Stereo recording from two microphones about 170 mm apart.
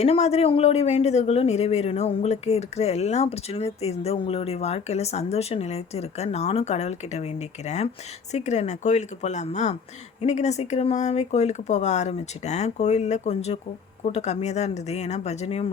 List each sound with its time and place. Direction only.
0.0 s speech: 40° left (ahead or behind)
8.3 s a woman's voice: 40° left (ahead or behind)